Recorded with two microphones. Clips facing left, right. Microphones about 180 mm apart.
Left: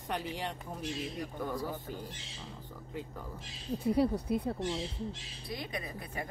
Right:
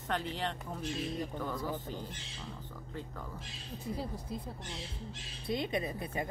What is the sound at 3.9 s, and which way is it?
Speech, 70° left (ahead or behind).